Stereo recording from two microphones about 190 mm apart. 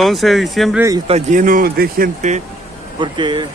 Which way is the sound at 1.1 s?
40° right (ahead or behind).